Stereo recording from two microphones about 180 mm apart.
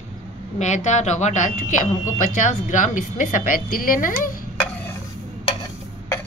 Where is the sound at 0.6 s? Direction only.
40° left (ahead or behind).